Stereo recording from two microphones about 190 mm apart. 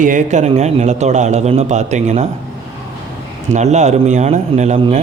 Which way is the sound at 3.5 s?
40° right (ahead or behind).